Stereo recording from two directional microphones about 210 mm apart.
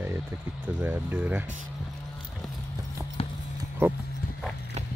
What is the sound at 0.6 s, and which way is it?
Speech, 10° right (ahead or behind).